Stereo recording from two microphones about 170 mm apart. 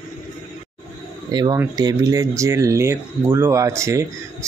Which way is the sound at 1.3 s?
25° right (ahead or behind).